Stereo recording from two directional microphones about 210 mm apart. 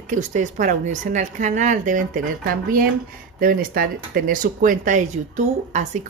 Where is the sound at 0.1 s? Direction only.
35° right (ahead or behind).